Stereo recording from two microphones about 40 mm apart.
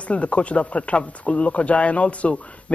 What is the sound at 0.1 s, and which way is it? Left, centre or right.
Speech, left.